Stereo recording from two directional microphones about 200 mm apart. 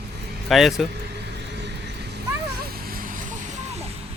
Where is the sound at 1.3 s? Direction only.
55° right (ahead or behind).